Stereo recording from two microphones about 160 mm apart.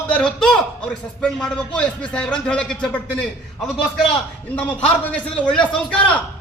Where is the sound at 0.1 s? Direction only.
5° left (ahead or behind).